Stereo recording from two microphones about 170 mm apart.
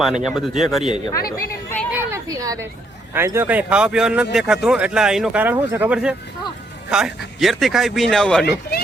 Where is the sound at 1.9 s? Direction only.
20° right (ahead or behind).